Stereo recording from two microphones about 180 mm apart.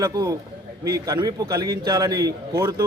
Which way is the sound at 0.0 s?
20° right (ahead or behind).